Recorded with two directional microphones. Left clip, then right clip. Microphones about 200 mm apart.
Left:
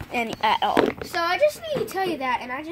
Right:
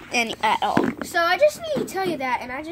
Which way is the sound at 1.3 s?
15° left (ahead or behind).